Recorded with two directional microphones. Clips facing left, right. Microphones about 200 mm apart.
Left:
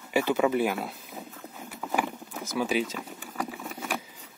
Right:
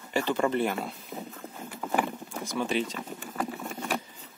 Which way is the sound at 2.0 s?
5° left (ahead or behind).